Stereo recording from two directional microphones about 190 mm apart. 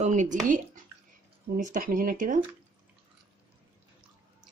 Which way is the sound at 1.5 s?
45° right (ahead or behind).